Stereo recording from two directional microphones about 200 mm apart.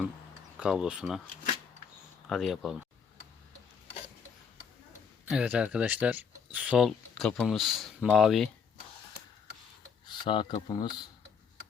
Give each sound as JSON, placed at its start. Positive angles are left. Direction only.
{"t": 0.5, "sound": "speech", "side_deg": -5}
{"t": 2.3, "sound": "speech", "side_deg": 0}
{"t": 5.3, "sound": "speech", "side_deg": -5}
{"t": 10.1, "sound": "speech", "side_deg": 25}